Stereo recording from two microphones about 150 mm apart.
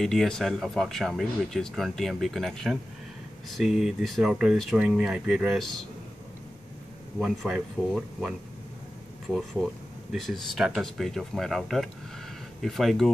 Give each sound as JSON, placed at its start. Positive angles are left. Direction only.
{"t": 0.0, "sound": "speech", "side_deg": 5}
{"t": 7.2, "sound": "speech", "side_deg": -5}